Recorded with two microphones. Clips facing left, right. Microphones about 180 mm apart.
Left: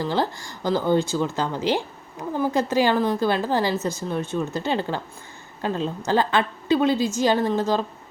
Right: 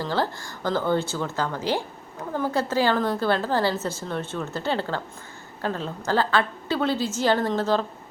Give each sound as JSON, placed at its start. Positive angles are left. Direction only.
{"t": 0.0, "sound": "speech", "side_deg": 15}